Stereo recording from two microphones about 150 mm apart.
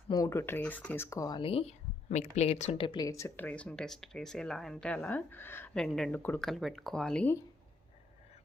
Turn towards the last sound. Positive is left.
turn(degrees=10)  # may be behind; listen again after turning